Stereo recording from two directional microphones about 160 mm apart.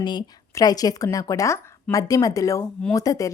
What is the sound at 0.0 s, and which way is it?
Speech, 30° left (ahead or behind).